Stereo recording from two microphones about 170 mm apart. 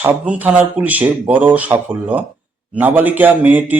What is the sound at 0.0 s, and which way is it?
Speech, 10° right (ahead or behind).